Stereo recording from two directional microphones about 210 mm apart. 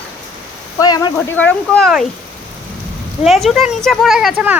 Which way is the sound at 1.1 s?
5° left (ahead or behind).